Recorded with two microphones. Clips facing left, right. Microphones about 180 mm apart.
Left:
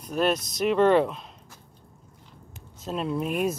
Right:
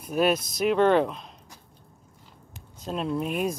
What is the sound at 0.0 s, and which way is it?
Speech, 5° right (ahead or behind).